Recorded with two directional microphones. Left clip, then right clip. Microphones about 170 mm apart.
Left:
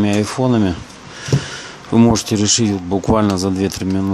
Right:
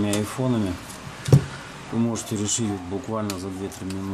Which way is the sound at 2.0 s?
45° left (ahead or behind).